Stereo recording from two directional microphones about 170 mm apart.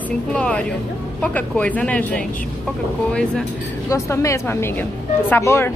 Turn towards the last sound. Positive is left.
turn(degrees=15)  # may be behind; listen again after turning